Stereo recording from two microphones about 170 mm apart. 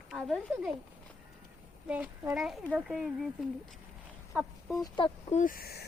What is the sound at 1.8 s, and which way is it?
A child's voice, 10° right (ahead or behind).